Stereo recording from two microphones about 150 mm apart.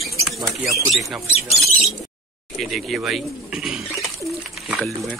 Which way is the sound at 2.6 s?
Centre (ahead or behind).